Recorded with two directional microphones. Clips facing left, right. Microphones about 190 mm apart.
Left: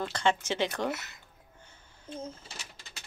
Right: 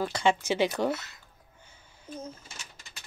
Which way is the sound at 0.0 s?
10° right (ahead or behind).